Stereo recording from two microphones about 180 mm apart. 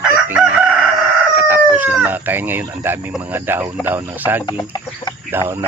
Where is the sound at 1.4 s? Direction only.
10° right (ahead or behind).